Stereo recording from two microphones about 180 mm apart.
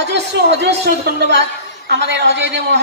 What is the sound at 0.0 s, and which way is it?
A woman's voice, 70° right (ahead or behind).